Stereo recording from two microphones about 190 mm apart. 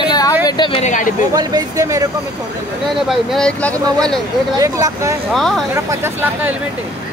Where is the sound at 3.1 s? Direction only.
Centre (ahead or behind).